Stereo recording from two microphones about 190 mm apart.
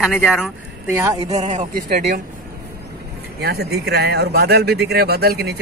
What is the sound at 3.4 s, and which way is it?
Speech, 55° right (ahead or behind).